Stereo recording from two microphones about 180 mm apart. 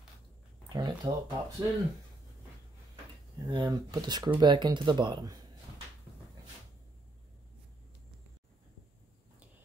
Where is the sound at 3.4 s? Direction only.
25° right (ahead or behind).